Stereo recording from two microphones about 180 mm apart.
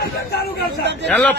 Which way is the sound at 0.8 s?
70° right (ahead or behind).